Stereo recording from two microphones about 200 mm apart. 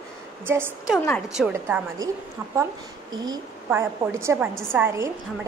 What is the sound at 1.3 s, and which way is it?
Speech, 5° right (ahead or behind).